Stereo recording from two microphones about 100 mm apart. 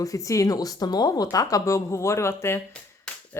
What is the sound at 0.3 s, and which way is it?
A woman's voice, 35° left (ahead or behind).